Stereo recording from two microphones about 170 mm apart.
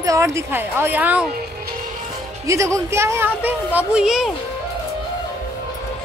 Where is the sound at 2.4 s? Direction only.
20° right (ahead or behind); by 4.3 s centre (ahead or behind).